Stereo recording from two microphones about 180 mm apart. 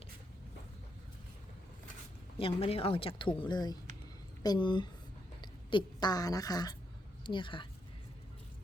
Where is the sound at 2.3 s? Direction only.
30° left (ahead or behind).